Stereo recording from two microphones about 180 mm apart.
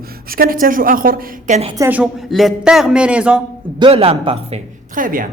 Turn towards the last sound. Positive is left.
turn(degrees=-50)  # may be behind; listen again after turning